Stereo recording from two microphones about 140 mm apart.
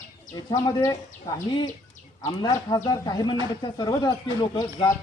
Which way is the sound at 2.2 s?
25° left (ahead or behind).